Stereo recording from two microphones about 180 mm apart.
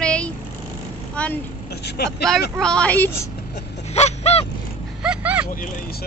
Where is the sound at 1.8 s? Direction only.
65° left (ahead or behind).